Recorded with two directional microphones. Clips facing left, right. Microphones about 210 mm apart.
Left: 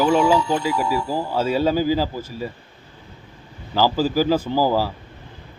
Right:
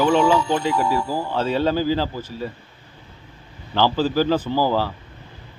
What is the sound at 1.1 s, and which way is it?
A man's voice, 10° left (ahead or behind).